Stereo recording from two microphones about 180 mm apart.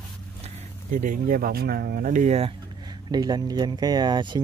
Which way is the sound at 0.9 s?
50° right (ahead or behind).